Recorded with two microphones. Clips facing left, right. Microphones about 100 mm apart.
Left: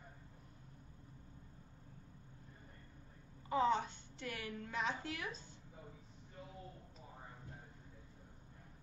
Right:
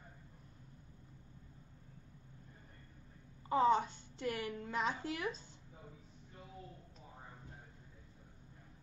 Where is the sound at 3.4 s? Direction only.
35° right (ahead or behind).